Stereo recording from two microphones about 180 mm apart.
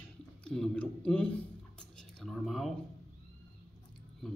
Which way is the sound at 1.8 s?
5° left (ahead or behind).